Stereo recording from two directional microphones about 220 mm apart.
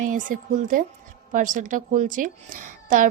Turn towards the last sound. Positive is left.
turn(degrees=-35)  # may be behind; listen again after turning